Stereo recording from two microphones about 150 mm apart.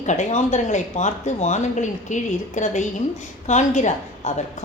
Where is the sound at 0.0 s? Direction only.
50° left (ahead or behind).